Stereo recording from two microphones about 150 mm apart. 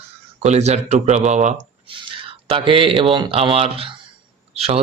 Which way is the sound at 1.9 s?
35° right (ahead or behind).